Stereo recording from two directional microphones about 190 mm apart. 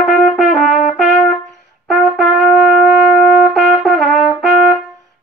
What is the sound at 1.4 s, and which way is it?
Brass instrument, 5° left (ahead or behind).